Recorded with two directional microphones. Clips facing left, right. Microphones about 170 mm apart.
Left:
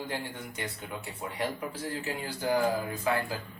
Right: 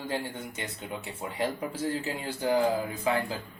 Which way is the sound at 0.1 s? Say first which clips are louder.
Right 3 dB; 25° right (ahead or behind).